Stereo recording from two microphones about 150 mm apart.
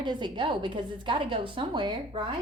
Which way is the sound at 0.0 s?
30° right (ahead or behind).